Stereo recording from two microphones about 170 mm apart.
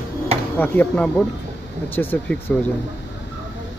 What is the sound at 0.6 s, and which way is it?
Speech, 10° left (ahead or behind).